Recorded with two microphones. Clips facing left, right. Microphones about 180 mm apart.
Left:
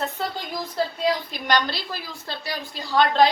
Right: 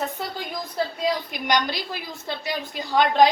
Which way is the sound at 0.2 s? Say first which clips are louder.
Left 2 dB; 10° right (ahead or behind).